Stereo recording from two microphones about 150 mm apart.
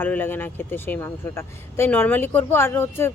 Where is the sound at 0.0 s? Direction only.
15° left (ahead or behind).